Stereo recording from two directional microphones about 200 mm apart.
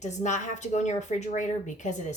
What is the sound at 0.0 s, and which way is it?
A woman's voice, 35° left (ahead or behind).